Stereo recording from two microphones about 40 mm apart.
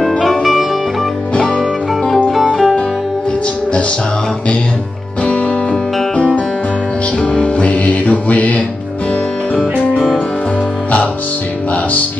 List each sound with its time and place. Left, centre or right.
0.2 s music: centre
2.4 s music: centre
5.2 s music: left
7.6 s mantra: left
9.9 s music: centre